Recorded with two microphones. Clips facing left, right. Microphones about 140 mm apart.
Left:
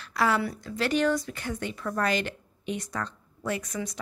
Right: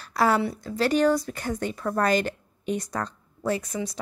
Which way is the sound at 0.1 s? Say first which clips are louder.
Right 3 dB; 40° right (ahead or behind).